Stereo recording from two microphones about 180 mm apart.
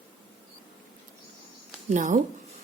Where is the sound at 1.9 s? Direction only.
45° right (ahead or behind).